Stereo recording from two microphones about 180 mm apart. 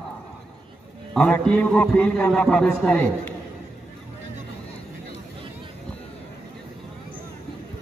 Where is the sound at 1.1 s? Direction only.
5° left (ahead or behind).